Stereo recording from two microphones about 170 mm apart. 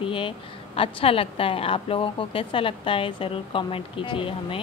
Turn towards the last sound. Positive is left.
turn(degrees=30)  # may be behind; listen again after turning